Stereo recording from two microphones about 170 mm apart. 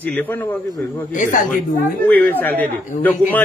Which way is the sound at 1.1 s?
50° left (ahead or behind).